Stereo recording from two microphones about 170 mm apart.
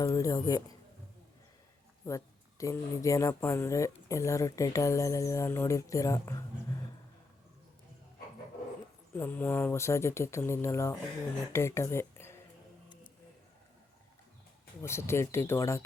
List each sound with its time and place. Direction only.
0.0 s speech: 20° left (ahead or behind)
2.0 s speech: 20° left (ahead or behind)
9.1 s speech: 10° left (ahead or behind)
14.8 s speech: 15° left (ahead or behind)